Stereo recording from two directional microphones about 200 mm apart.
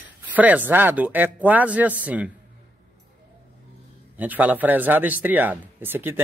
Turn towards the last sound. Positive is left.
turn(degrees=-10)  # may be behind; listen again after turning